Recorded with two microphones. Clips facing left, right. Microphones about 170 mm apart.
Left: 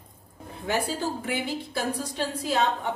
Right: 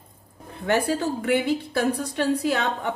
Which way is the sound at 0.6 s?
65° right (ahead or behind).